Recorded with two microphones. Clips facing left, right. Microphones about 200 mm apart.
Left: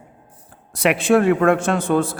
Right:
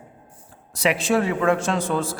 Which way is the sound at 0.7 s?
60° left (ahead or behind).